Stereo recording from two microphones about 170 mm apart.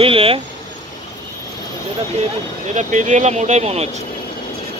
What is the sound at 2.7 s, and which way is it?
Speech, 45° right (ahead or behind).